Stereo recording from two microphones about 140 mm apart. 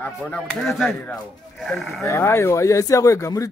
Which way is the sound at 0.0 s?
10° left (ahead or behind).